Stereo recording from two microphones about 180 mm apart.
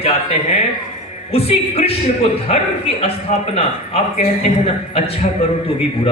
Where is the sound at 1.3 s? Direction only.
35° left (ahead or behind).